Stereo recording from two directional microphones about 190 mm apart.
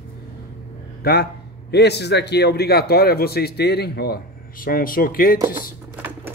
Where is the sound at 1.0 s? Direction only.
55° left (ahead or behind).